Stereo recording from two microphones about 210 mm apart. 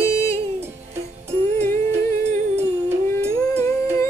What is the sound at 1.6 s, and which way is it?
Music, 35° right (ahead or behind).